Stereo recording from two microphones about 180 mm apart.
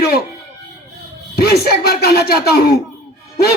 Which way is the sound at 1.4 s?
60° left (ahead or behind).